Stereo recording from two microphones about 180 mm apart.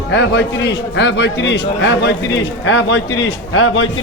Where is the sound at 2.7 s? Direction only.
85° left.